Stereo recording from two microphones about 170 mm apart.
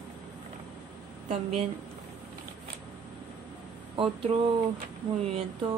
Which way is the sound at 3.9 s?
30° right (ahead or behind).